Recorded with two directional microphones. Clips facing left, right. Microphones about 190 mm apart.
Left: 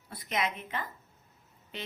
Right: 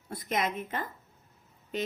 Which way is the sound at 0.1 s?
45° right (ahead or behind).